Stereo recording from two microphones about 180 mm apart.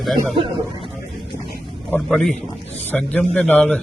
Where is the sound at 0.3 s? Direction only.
30° right (ahead or behind).